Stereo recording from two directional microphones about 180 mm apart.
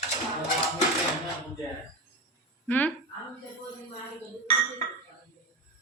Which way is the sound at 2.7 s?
10° left (ahead or behind).